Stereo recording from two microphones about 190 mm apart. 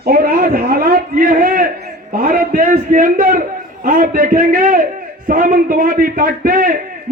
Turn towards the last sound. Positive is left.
turn(degrees=-45)  # may be behind; listen again after turning